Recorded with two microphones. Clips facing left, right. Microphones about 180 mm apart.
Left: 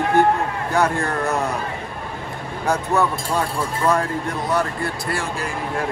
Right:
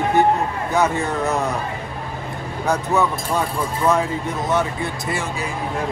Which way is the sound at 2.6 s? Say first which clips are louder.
Even; centre (ahead or behind).